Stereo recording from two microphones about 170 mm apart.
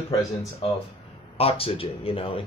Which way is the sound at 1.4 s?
35° left (ahead or behind).